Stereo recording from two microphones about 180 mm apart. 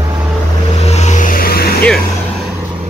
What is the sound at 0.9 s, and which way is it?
Vehicle, 40° left (ahead or behind).